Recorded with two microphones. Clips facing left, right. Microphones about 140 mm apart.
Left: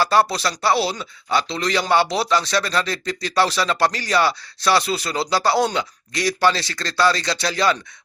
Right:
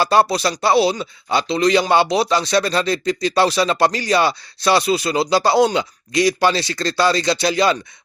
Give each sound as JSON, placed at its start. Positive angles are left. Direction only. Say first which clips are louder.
{"t": 0.0, "sound": "speech", "louder": "right 2 dB", "side_deg": -20}